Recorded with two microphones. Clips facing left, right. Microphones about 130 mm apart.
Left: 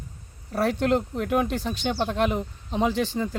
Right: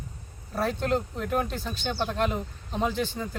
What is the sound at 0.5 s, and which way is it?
Speech, 75° left (ahead or behind).